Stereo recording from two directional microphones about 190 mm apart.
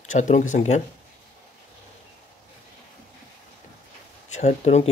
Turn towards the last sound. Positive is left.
turn(degrees=35)  # may be behind; listen again after turning